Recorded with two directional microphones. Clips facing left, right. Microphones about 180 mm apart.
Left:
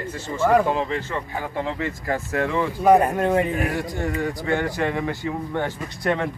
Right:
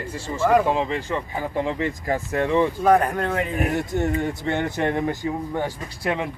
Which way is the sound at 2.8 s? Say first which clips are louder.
Left 6 dB; 20° left (ahead or behind).